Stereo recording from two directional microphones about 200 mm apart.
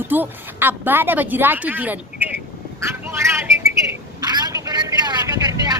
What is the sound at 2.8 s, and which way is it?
Vehicle, 15° right (ahead or behind).